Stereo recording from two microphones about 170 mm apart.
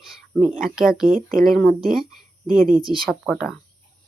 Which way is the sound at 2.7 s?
30° right (ahead or behind).